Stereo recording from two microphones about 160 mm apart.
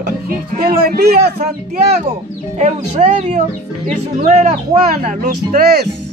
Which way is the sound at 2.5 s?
45° right (ahead or behind).